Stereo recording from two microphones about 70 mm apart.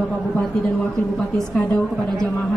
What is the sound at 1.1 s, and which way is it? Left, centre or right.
Speech, centre.